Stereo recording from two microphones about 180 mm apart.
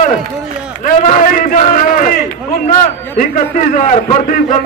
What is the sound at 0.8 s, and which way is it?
A man's voice, 45° left (ahead or behind).